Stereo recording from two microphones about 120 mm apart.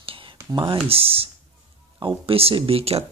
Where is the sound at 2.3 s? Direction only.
50° right (ahead or behind).